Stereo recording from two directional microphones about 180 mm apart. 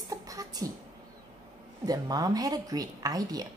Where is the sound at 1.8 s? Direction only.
20° right (ahead or behind).